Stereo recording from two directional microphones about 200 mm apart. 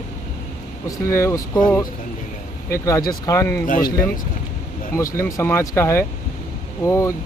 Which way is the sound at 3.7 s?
45° left (ahead or behind).